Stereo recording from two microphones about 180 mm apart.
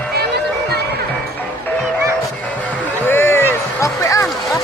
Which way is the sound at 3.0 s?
10° left (ahead or behind).